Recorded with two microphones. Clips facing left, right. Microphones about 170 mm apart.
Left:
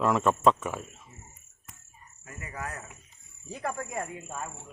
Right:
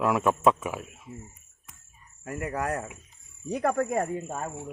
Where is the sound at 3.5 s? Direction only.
60° right (ahead or behind).